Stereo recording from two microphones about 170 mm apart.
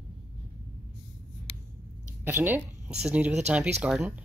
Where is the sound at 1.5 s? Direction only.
30° left (ahead or behind).